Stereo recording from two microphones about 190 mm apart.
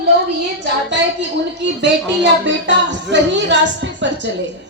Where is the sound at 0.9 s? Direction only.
70° right (ahead or behind).